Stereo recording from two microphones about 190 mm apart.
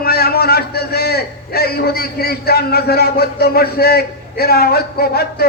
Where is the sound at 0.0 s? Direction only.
55° left (ahead or behind).